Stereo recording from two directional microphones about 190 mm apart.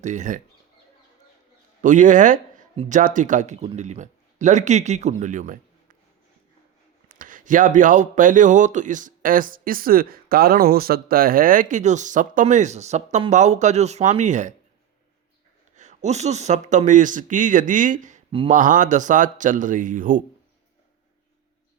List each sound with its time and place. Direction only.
0.0 s speech: 40° right (ahead or behind)
1.8 s speech: 40° right (ahead or behind)
7.1 s speech: 45° right (ahead or behind)
15.7 s speech: 40° right (ahead or behind)
18.3 s speech: 30° right (ahead or behind)
18.5 s speech: 45° right (ahead or behind)